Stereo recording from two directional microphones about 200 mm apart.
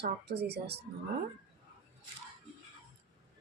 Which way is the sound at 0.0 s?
55° right (ahead or behind).